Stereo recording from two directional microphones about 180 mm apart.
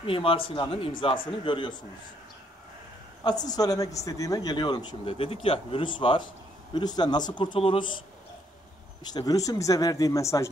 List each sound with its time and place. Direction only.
0.0 s speech: 30° left (ahead or behind)
3.3 s speech: 20° left (ahead or behind)
9.0 s speech: 20° left (ahead or behind)